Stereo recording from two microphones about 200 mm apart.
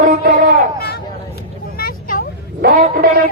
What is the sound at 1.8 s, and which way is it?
Vehicle, 45° left (ahead or behind).